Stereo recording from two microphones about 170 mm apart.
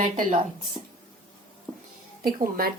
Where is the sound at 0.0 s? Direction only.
55° right (ahead or behind).